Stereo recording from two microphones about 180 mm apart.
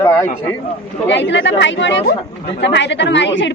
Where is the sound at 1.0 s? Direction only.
85° left.